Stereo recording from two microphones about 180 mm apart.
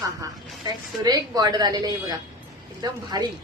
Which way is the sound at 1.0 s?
20° right (ahead or behind).